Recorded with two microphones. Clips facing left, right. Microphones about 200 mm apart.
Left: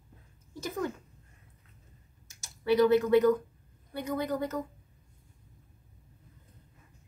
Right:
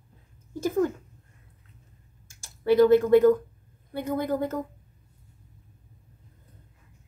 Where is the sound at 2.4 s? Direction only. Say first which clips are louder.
Right 5 dB; 50° right (ahead or behind).